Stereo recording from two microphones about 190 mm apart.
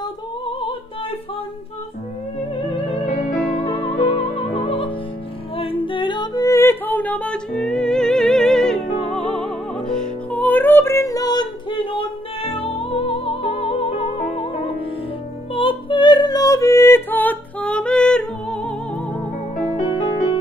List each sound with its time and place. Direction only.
3.6 s music: 25° left (ahead or behind); by 8.8 s 5° left (ahead or behind)
9.8 s music: 5° left (ahead or behind)
19.9 s music: 25° left (ahead or behind)